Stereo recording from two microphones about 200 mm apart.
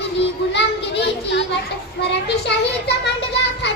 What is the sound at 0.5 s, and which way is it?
Children playing, 60° left (ahead or behind).